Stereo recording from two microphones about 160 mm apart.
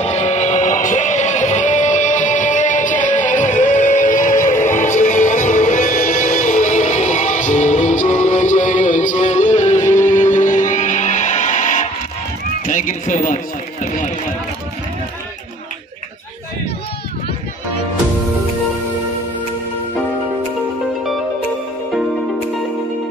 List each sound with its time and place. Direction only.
0.0 s music: 45° left (ahead or behind)
12.6 s run: 55° left (ahead or behind)
13.8 s speech: 50° left (ahead or behind)